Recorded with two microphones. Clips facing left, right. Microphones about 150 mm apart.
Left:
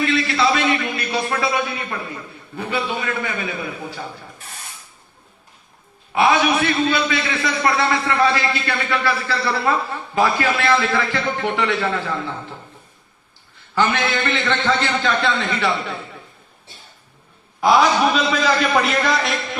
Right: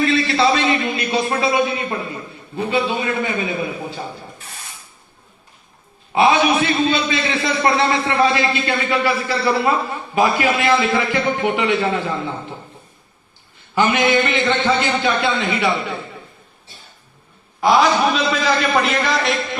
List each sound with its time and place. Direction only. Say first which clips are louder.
0.0 s a sound: right 2 dB; 30° right (ahead or behind)
2.6 s a man's voice: right 4 dB; 25° right (ahead or behind)
6.1 s a man's voice: right 2 dB; 25° right (ahead or behind)
13.7 s a man's voice: right 4 dB; 15° right (ahead or behind)
17.6 s a man's voice: even; centre (ahead or behind)